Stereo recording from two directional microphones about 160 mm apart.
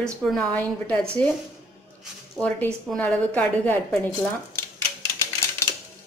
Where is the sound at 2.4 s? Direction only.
5° left (ahead or behind).